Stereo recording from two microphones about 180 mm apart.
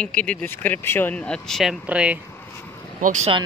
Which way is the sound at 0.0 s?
5° left (ahead or behind).